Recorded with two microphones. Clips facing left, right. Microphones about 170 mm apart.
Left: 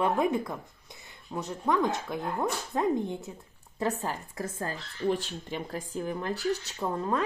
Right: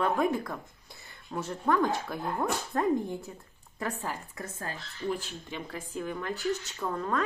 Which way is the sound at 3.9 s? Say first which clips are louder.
Left 3 dB; 10° left (ahead or behind).